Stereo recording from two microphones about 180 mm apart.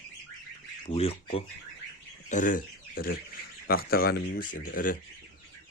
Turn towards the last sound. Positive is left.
turn(degrees=50)  # may be behind; listen again after turning